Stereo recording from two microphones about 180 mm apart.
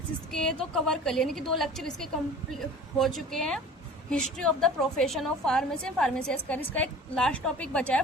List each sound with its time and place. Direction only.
0.3 s a woman's voice: 5° left (ahead or behind)